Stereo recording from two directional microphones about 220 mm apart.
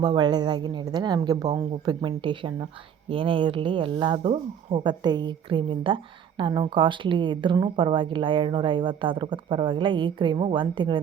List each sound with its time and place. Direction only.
0.0 s speech: 20° right (ahead or behind)